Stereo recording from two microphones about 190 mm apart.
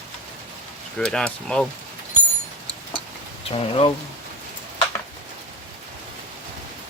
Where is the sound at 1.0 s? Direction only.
5° left (ahead or behind).